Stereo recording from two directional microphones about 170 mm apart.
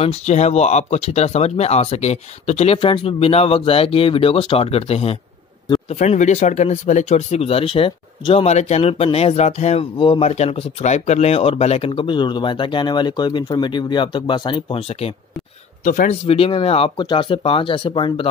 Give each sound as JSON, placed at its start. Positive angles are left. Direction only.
{"t": 0.0, "sound": "speech", "side_deg": 40}
{"t": 9.9, "sound": "speech", "side_deg": 30}
{"t": 15.8, "sound": "speech", "side_deg": 50}
{"t": 16.3, "sound": "speech", "side_deg": 35}